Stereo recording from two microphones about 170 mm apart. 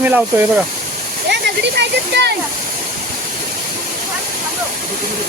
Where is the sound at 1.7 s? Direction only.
80° right.